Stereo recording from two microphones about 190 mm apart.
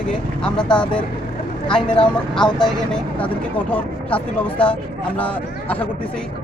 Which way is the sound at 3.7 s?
5° left (ahead or behind).